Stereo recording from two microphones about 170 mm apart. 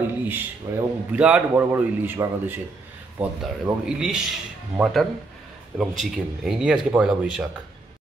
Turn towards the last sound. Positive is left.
turn(degrees=-5)  # may be behind; listen again after turning